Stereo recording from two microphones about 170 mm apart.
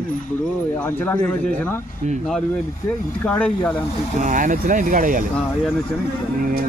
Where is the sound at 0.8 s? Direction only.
10° left (ahead or behind).